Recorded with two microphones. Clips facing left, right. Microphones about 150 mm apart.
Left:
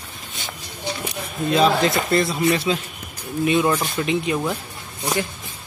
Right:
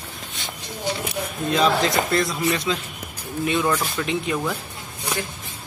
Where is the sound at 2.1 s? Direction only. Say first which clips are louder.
Left 3 dB; 25° left (ahead or behind).